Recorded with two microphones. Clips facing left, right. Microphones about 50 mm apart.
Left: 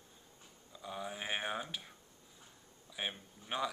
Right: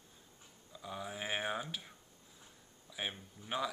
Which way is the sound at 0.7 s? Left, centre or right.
Centre.